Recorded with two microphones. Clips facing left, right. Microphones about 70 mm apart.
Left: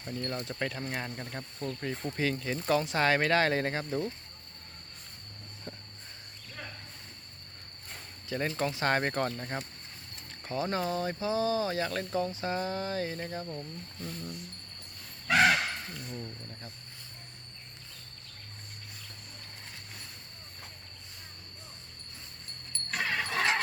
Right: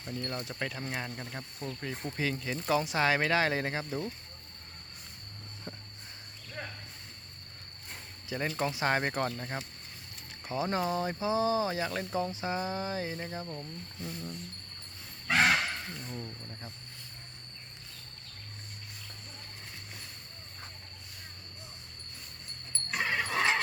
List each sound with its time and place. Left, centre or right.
0.0 s speech: centre
8.3 s speech: centre
10.5 s speech: centre
16.0 s speech: centre
22.9 s a sound: centre